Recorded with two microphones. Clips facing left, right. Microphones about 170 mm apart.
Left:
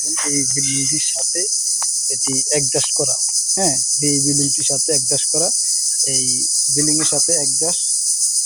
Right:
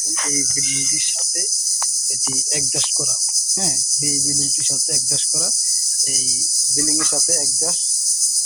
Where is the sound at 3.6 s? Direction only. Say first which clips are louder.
Left 9 dB; 80° left; by 5.5 s 60° left (ahead or behind).